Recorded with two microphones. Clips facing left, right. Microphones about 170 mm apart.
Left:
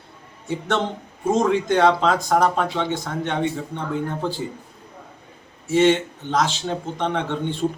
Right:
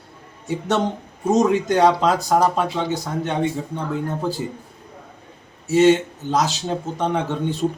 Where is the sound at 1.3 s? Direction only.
40° right (ahead or behind).